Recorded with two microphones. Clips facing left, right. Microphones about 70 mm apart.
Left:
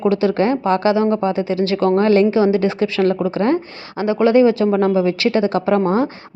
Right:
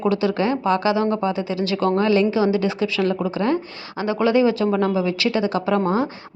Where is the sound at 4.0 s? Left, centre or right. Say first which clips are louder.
Left 5 dB; left.